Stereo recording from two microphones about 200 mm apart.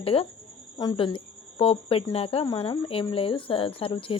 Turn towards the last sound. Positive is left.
turn(degrees=25)  # may be behind; listen again after turning